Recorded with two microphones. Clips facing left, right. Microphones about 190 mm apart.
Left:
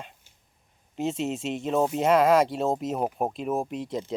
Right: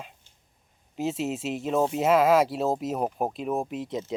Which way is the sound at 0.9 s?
Centre (ahead or behind).